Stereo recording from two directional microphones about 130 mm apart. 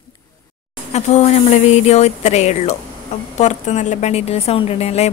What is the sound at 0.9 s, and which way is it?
A woman's voice, 60° left (ahead or behind).